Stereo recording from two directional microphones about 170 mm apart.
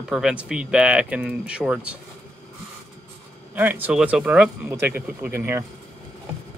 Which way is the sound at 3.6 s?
10° right (ahead or behind).